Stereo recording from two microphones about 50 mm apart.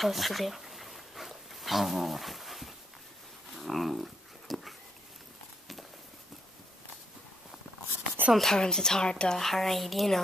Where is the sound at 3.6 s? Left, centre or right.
Centre.